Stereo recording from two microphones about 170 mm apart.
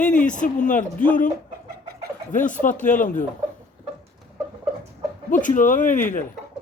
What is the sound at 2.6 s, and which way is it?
Speech, 50° left (ahead or behind).